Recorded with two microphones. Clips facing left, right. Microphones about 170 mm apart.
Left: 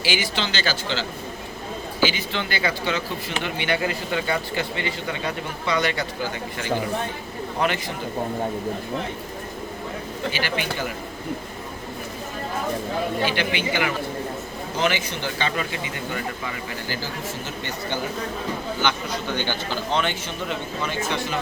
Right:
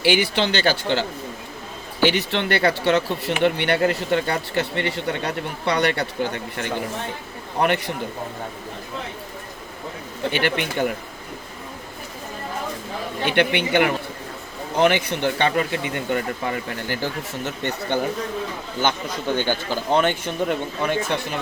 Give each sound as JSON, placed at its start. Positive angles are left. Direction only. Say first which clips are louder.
{"t": 0.0, "sound": "speech", "louder": "right 6 dB", "side_deg": -60}
{"t": 7.6, "sound": "speech", "louder": "right 4 dB", "side_deg": -60}
{"t": 10.3, "sound": "speech", "louder": "right 6 dB", "side_deg": -60}
{"t": 13.2, "sound": "speech", "louder": "right 4 dB", "side_deg": -60}
{"t": 18.8, "sound": "speech", "louder": "right 5 dB", "side_deg": -45}